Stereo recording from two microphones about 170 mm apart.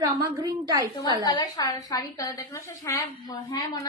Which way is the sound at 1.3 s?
20° left (ahead or behind).